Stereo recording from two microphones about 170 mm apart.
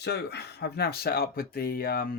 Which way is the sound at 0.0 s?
75° left (ahead or behind).